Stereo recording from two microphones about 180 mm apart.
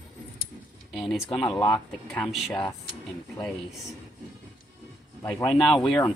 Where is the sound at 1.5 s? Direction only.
20° left (ahead or behind).